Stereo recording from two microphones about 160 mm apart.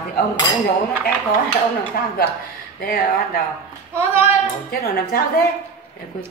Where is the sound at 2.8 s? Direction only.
70° left (ahead or behind).